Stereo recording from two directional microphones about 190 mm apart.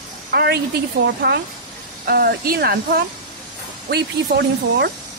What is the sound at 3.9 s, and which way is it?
A woman's voice, 60° right (ahead or behind).